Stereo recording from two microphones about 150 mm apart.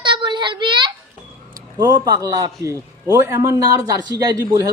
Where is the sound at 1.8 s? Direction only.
30° right (ahead or behind).